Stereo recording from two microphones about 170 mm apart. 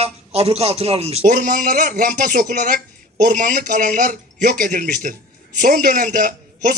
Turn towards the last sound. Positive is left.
turn(degrees=-55)  # may be behind; listen again after turning